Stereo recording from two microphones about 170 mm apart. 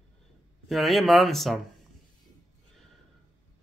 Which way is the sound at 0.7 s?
Centre (ahead or behind).